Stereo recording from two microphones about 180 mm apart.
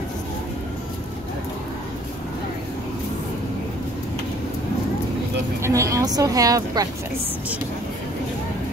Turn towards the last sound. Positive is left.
turn(degrees=-20)  # may be behind; listen again after turning